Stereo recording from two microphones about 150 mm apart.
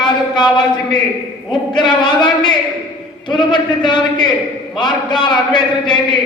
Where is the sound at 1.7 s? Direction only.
30° left (ahead or behind).